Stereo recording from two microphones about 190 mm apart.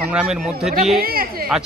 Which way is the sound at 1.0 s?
50° right (ahead or behind).